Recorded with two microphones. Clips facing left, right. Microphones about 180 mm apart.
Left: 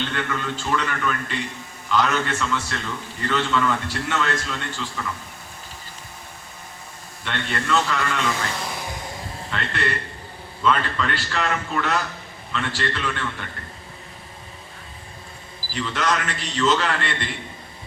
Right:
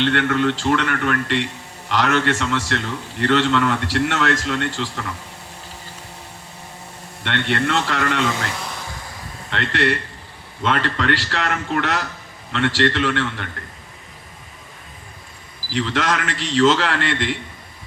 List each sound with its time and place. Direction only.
0.0 s a man's voice: 75° right (ahead or behind)
7.3 s a man's voice: 75° right (ahead or behind)
8.5 s music: 5° left (ahead or behind)
9.5 s a man's voice: 90° right
15.7 s a man's voice: 90° right